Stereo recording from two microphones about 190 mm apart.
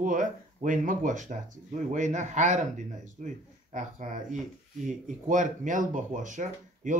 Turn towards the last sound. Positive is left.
turn(degrees=-40)  # may be behind; listen again after turning